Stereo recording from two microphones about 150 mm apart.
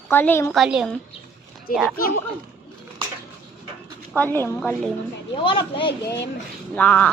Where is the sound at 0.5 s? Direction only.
Centre (ahead or behind).